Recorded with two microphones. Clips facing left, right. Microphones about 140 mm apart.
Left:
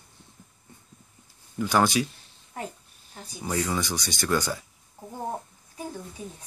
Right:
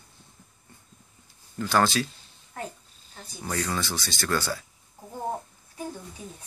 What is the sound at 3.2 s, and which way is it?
Speech, 15° left (ahead or behind).